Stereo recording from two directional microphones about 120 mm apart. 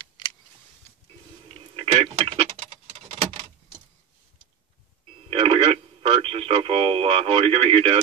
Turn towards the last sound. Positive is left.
turn(degrees=-55)  # may be behind; listen again after turning